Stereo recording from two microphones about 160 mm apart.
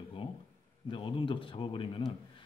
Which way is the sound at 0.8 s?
30° left (ahead or behind).